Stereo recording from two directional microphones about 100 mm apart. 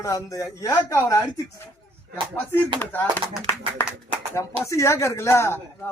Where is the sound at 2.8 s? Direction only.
20° left (ahead or behind).